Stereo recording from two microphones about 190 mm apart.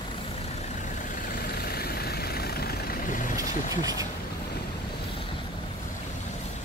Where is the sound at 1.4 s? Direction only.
50° left (ahead or behind).